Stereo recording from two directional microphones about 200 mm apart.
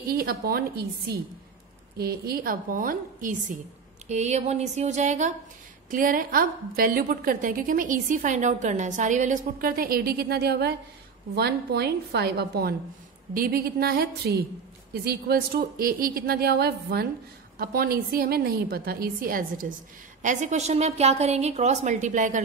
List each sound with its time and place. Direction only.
0.1 s a woman's voice: 50° right (ahead or behind)